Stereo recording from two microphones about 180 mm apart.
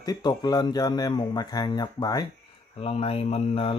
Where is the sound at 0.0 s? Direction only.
20° left (ahead or behind).